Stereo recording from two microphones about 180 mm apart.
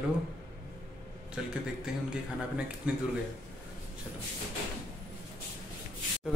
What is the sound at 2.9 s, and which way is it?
Speech, 5° right (ahead or behind).